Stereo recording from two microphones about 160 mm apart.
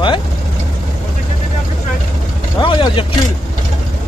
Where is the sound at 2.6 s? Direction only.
30° left (ahead or behind).